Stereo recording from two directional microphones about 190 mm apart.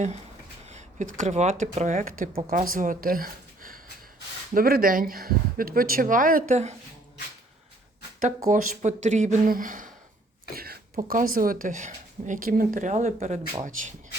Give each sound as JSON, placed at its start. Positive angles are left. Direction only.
{"t": 0.6, "sound": "a sound", "side_deg": -35}
{"t": 1.2, "sound": "speech", "side_deg": -35}
{"t": 8.4, "sound": "speech", "side_deg": -40}